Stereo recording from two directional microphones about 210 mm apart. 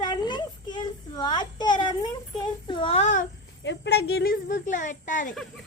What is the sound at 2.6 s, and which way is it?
Speech, 25° left (ahead or behind).